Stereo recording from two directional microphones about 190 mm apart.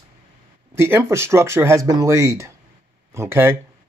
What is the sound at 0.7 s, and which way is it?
Speech, 15° right (ahead or behind).